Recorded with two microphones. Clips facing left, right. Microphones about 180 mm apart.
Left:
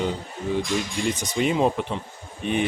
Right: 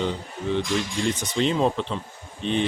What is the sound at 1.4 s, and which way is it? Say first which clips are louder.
Speech: left 1 dB; 10° left (ahead or behind).